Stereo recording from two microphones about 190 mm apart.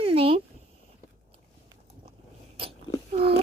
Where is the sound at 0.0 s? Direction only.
30° right (ahead or behind).